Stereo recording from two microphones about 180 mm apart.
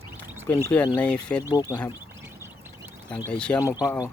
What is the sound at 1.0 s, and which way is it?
Speech, 5° left (ahead or behind).